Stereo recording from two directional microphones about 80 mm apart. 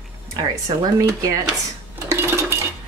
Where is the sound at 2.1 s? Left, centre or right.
Right.